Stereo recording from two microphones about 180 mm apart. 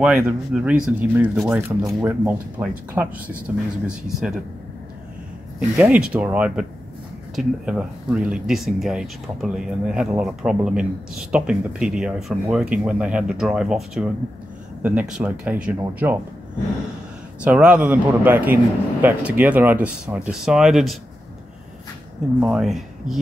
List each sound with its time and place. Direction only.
0.0 s a man's voice: 5° right (ahead or behind)
5.8 s a man's voice: 5° right (ahead or behind)
17.4 s a man's voice: 5° right (ahead or behind)
22.4 s speech: centre (ahead or behind)